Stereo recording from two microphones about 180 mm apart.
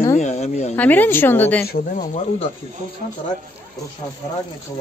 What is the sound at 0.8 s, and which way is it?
Speech, 10° left (ahead or behind).